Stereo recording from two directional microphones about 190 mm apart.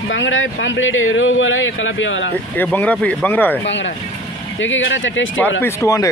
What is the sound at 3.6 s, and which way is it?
Speech, 70° left (ahead or behind).